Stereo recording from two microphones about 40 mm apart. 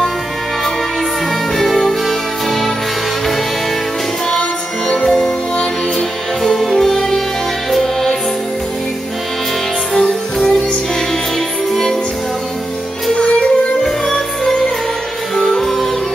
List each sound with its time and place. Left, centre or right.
1.6 s music: centre
4.8 s music: centre
9.9 s music: centre
13.1 s music: left
13.8 s music: centre